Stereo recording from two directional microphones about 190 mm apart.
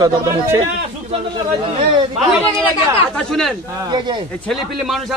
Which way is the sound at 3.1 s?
5° left (ahead or behind).